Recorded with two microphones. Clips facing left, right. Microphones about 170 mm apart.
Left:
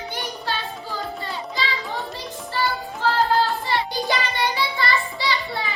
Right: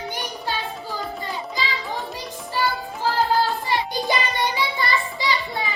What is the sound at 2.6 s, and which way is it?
Music, 10° right (ahead or behind).